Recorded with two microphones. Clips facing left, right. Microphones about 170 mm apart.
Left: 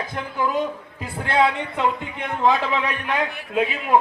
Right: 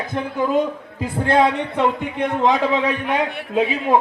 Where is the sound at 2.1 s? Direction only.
20° right (ahead or behind).